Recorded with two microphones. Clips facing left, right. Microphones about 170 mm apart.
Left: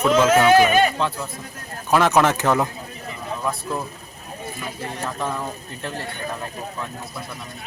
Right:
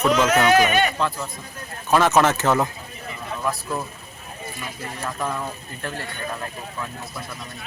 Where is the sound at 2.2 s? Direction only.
15° left (ahead or behind).